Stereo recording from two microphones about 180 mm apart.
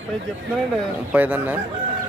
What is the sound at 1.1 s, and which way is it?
Speech, 10° right (ahead or behind).